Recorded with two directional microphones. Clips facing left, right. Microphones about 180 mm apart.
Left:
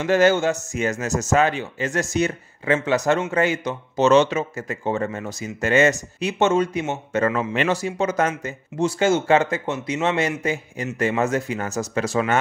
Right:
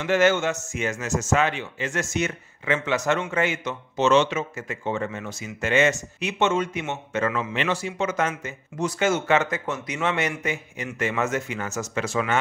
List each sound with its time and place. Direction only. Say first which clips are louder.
0.0 s speech: left 3 dB; 35° left (ahead or behind)